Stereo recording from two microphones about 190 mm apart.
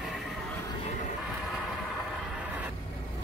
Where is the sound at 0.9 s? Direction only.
35° left (ahead or behind).